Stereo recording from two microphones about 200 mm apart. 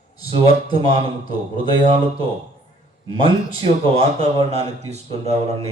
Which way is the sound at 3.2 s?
25° right (ahead or behind).